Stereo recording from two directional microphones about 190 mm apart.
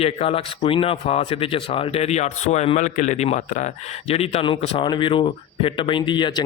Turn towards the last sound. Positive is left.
turn(degrees=25)  # may be behind; listen again after turning